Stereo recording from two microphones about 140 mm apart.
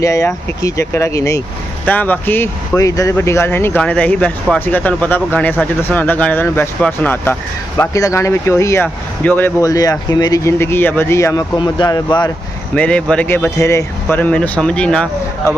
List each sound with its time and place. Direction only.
0.0 s speech: 25° left (ahead or behind)
1.9 s speech: 10° left (ahead or behind)
9.6 s speech: 25° left (ahead or behind)
11.5 s speech: 30° left (ahead or behind)
12.7 s speech: 10° left (ahead or behind)